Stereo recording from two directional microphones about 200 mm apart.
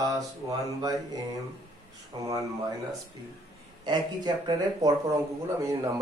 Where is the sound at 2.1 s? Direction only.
20° right (ahead or behind).